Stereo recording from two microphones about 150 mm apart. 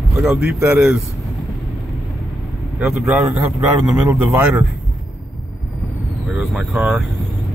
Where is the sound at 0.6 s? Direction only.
15° right (ahead or behind).